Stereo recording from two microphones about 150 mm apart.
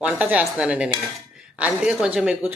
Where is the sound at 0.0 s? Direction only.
10° right (ahead or behind).